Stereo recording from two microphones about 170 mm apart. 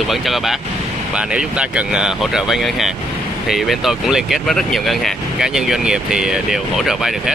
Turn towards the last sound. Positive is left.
turn(degrees=0)  # may be behind; listen again after turning